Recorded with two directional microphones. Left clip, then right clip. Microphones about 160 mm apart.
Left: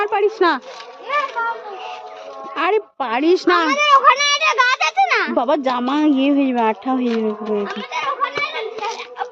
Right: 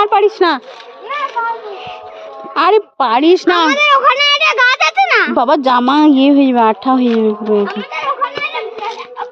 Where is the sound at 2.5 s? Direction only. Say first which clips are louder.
Right 8 dB; 45° right (ahead or behind).